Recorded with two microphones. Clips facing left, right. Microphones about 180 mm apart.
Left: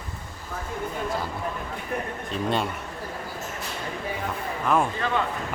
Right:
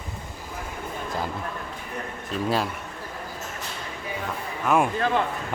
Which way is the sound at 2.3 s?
5° right (ahead or behind).